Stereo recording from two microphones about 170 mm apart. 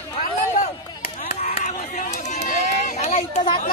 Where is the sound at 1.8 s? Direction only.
45° left (ahead or behind).